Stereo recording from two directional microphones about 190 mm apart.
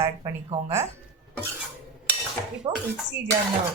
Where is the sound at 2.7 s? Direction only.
25° right (ahead or behind).